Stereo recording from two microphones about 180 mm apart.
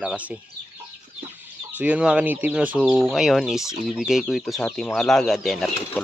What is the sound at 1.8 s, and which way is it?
Chicken, 5° right (ahead or behind).